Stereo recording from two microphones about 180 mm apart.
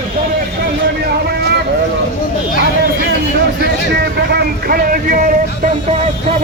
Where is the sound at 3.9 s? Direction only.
65° right (ahead or behind).